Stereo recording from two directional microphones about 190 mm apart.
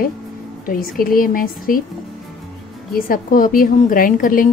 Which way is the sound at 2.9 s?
45° left (ahead or behind).